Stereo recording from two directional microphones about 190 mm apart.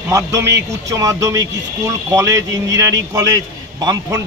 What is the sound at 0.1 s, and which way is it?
A man's voice, 15° right (ahead or behind).